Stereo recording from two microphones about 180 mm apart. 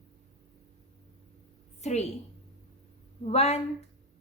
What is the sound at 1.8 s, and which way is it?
Speech, 40° left (ahead or behind).